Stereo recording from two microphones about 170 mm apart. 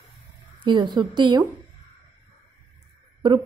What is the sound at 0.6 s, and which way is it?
Speech, 25° right (ahead or behind).